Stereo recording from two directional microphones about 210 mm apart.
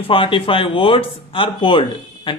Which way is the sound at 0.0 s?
25° left (ahead or behind).